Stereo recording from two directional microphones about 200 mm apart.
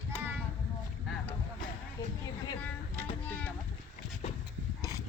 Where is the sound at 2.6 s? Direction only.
5° left (ahead or behind).